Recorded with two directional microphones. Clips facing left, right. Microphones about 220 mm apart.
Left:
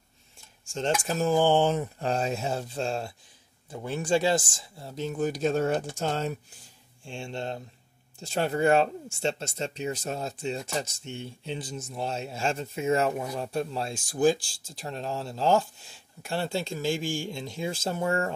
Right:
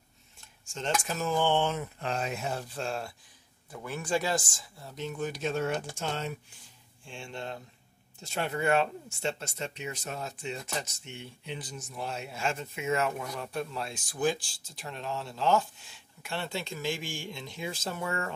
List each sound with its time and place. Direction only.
1.0 s speech: 35° left (ahead or behind)
7.1 s speech: 25° left (ahead or behind)